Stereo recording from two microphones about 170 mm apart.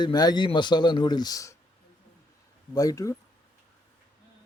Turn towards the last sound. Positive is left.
turn(degrees=20)  # may be behind; listen again after turning